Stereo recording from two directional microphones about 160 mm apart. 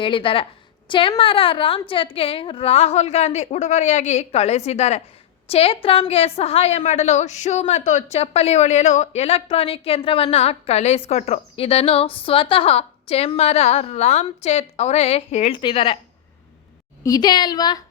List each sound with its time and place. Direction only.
0.0 s a woman's voice: 35° left (ahead or behind)
15.5 s a woman's voice: 30° left (ahead or behind)
17.0 s a woman's voice: 25° left (ahead or behind)